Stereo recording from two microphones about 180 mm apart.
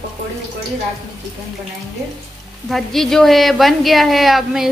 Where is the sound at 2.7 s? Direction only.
Centre (ahead or behind).